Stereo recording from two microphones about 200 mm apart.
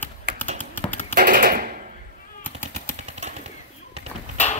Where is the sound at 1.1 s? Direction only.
45° right (ahead or behind).